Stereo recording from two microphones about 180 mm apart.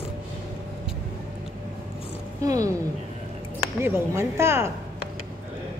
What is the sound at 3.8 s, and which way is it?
Speech, 15° right (ahead or behind).